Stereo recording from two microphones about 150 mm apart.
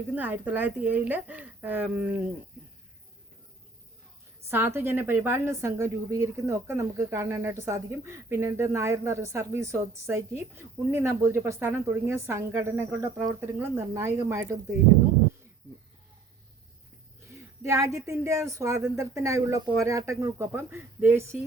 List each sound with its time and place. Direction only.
0.1 s a woman's voice: 10° right (ahead or behind)
4.4 s a woman's voice: 15° right (ahead or behind)
17.3 s a woman's voice: 20° right (ahead or behind)